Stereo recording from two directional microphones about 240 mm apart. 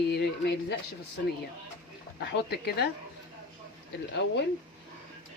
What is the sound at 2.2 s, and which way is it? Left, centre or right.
Speech, left.